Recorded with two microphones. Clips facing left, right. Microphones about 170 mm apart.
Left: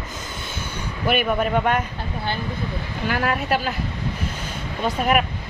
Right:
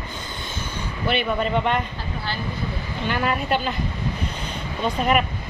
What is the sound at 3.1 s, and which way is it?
Speech, 5° left (ahead or behind).